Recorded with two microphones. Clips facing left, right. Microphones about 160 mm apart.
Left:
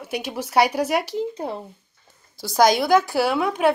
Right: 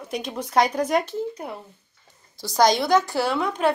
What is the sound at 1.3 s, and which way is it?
Speech, 30° left (ahead or behind).